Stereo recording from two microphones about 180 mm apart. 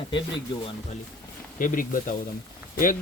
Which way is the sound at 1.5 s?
50° left (ahead or behind).